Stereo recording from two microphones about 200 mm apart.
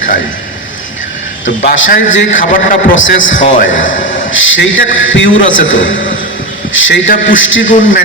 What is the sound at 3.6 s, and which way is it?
A man's voice, 70° left (ahead or behind).